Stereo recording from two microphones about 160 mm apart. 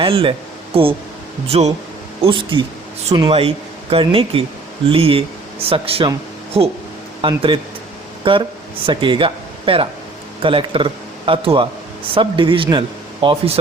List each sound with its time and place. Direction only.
0.0 s a man's voice: 35° right (ahead or behind)
3.3 s a man's voice: 35° right (ahead or behind)